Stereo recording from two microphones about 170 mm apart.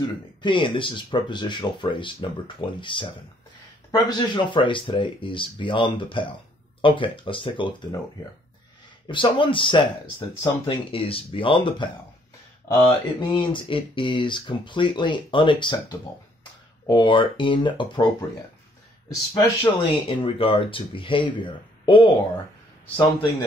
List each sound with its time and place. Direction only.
0.4 s speech: 30° left (ahead or behind)
9.0 s speech: 30° left (ahead or behind)
19.0 s speech: 25° left (ahead or behind)